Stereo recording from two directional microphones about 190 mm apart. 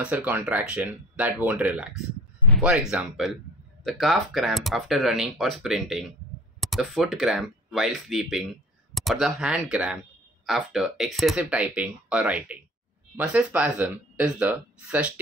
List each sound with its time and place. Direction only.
0.0 s speech: 5° right (ahead or behind)